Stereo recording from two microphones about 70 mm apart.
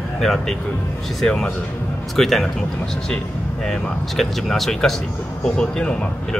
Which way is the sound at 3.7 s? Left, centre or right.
Centre.